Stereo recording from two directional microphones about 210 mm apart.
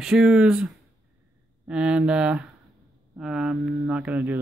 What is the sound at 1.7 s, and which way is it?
Speech, 5° right (ahead or behind).